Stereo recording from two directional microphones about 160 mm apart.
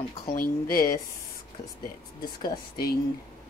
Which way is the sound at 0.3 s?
65° left (ahead or behind).